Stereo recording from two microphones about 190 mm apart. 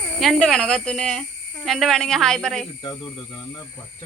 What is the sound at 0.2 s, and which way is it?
Speech, centre (ahead or behind).